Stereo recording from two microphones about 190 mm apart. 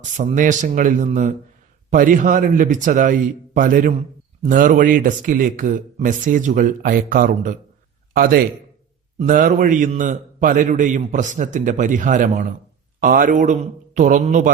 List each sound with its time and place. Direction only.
0.2 s a man's voice: 40° right (ahead or behind)